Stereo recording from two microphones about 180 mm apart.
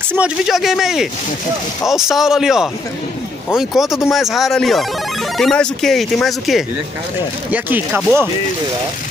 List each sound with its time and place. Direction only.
0.1 s speech: 5° right (ahead or behind)
7.5 s speech: 10° right (ahead or behind)